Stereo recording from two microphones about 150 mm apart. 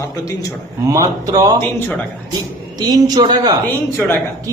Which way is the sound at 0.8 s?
20° right (ahead or behind).